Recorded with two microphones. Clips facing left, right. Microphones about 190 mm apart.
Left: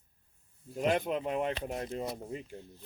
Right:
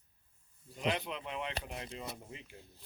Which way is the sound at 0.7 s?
50° left (ahead or behind).